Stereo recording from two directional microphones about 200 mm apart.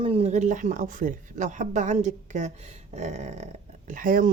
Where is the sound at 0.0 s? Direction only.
30° right (ahead or behind).